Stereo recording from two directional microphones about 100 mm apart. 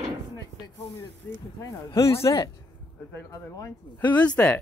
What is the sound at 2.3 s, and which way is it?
Speech, 45° left (ahead or behind).